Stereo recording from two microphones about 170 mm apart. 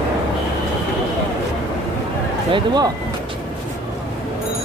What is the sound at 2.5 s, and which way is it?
Speech, 25° right (ahead or behind).